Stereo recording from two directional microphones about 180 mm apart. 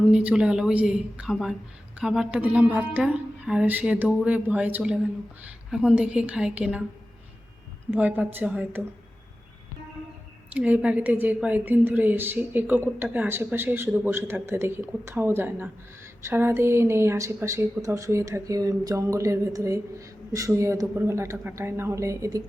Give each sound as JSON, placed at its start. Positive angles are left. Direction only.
{"t": 0.1, "sound": "a woman's voice", "side_deg": -5}
{"t": 7.9, "sound": "speech", "side_deg": -10}
{"t": 10.5, "sound": "speech", "side_deg": -5}